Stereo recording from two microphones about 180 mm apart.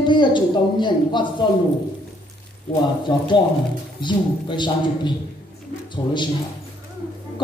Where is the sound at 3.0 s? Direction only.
25° left (ahead or behind).